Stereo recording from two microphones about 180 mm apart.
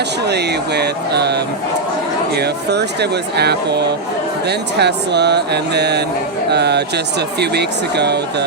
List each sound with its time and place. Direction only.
0.3 s speech: 65° right (ahead or behind)